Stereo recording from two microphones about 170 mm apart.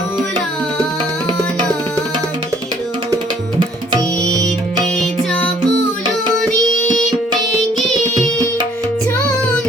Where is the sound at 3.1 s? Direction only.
25° right (ahead or behind).